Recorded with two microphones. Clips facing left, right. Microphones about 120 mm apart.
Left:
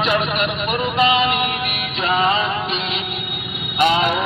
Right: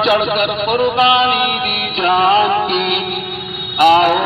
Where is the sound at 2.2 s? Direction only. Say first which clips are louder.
Right 8 dB; 50° right (ahead or behind).